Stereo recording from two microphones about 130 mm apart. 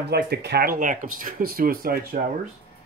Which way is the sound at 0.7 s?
90° right.